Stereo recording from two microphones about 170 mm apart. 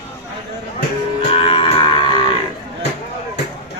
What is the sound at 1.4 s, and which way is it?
Cattle, 35° left (ahead or behind).